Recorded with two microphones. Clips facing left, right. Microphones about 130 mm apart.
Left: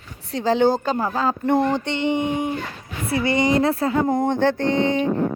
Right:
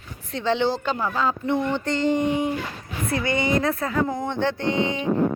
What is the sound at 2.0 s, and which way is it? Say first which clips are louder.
Speech: right 2 dB; 60° left (ahead or behind).